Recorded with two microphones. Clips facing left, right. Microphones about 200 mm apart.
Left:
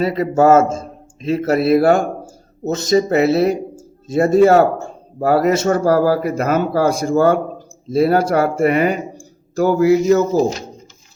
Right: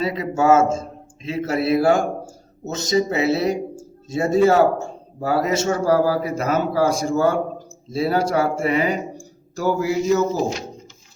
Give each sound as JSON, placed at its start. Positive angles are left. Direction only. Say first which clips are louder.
{"t": 0.0, "sound": "a man's voice", "louder": "left 6 dB", "side_deg": 55}